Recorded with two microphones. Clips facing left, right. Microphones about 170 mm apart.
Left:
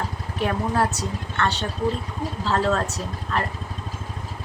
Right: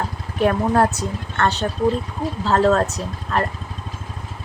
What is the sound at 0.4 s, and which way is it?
Speech, 50° right (ahead or behind).